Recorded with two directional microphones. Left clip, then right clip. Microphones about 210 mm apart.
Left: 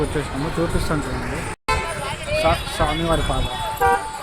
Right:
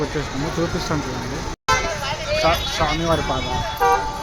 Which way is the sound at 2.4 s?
Centre (ahead or behind).